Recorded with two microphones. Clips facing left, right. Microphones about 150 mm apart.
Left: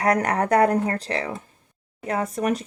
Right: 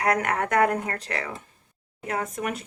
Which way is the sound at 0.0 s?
35° left (ahead or behind).